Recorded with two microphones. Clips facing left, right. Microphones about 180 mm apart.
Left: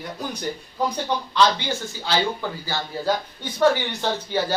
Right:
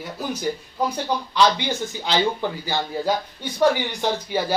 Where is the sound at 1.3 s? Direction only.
15° right (ahead or behind).